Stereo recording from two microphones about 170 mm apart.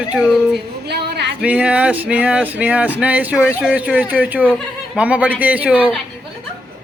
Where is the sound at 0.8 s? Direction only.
75° right (ahead or behind).